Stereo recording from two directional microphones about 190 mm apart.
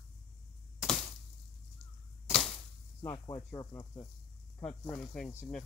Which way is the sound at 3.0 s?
15° left (ahead or behind).